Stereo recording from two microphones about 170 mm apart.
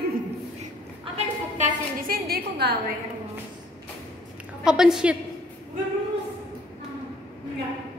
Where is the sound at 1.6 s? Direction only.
50° right (ahead or behind); by 2.8 s 70° right (ahead or behind).